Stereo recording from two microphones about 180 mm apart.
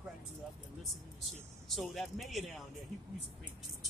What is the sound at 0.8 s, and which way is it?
Speech, centre (ahead or behind).